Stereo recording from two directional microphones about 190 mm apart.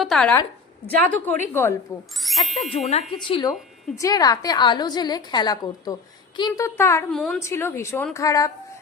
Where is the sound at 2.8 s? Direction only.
25° left (ahead or behind).